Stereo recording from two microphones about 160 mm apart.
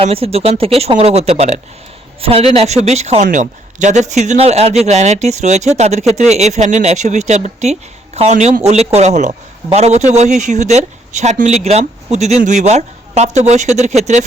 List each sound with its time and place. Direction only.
0.0 s a man's voice: 40° right (ahead or behind)